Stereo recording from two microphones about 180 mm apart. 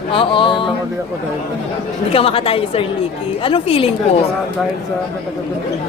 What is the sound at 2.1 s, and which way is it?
A woman's voice, 30° left (ahead or behind).